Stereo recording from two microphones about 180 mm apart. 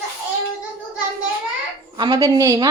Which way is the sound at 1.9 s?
25° right (ahead or behind).